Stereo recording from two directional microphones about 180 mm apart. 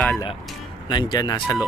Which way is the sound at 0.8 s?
25° left (ahead or behind).